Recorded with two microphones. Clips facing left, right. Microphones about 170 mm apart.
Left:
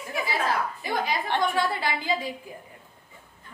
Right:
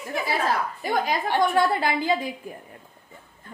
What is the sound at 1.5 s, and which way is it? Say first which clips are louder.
Speech: right 5 dB; 50° right (ahead or behind).